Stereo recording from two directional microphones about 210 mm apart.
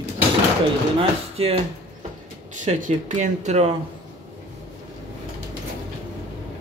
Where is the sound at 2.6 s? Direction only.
35° right (ahead or behind).